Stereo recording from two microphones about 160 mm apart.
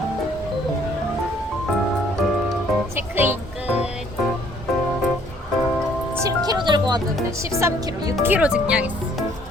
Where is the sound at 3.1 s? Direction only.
10° right (ahead or behind).